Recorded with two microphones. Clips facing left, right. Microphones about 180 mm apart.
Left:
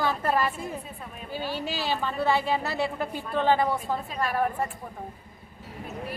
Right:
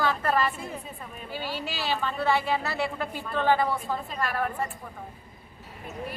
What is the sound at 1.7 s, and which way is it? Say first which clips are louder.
A woman's voice: even; 15° left (ahead or behind).